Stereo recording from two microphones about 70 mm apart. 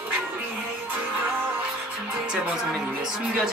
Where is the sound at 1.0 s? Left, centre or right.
Right.